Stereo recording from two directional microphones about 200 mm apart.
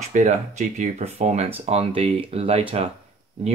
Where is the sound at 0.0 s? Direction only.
35° right (ahead or behind).